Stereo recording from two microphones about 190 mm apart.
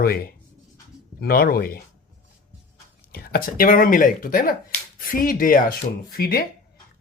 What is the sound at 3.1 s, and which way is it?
Speech, 50° left (ahead or behind).